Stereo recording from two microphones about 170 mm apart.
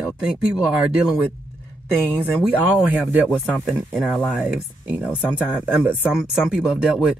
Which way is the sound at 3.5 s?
5° left (ahead or behind).